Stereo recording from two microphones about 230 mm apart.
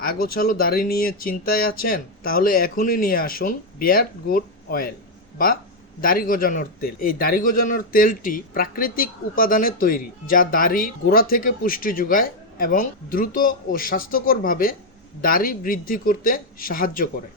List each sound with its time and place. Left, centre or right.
0.0 s a man's voice: left
6.0 s a man's voice: left